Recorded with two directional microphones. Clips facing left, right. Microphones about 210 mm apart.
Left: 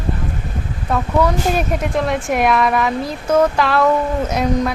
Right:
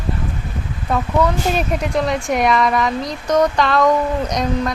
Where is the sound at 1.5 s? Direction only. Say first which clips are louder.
Even; centre (ahead or behind).